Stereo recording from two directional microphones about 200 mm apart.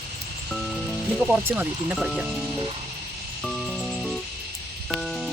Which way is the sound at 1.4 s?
10° right (ahead or behind).